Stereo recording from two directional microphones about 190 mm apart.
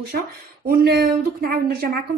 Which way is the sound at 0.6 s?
55° right (ahead or behind).